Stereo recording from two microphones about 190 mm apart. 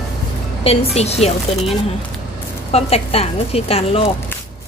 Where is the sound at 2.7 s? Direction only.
30° left (ahead or behind).